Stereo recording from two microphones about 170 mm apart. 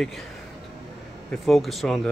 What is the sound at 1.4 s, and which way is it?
Speech, centre (ahead or behind).